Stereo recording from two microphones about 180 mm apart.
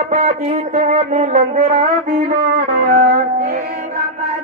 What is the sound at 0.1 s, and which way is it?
Music, 45° right (ahead or behind).